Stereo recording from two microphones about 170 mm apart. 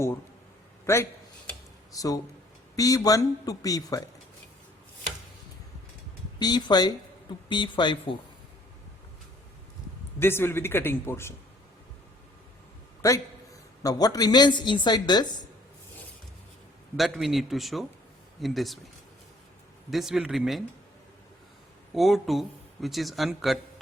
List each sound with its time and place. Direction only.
1.9 s a woman's voice: 20° left (ahead or behind)
6.4 s a woman's voice: 25° left (ahead or behind)
10.2 s a man's voice: 15° left (ahead or behind)
13.0 s a man's voice: 20° left (ahead or behind)
17.0 s a man's voice: centre (ahead or behind)
19.9 s a man's voice: centre (ahead or behind)
21.9 s speech: centre (ahead or behind)